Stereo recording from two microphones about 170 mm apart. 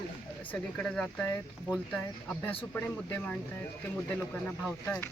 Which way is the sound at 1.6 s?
5° left (ahead or behind).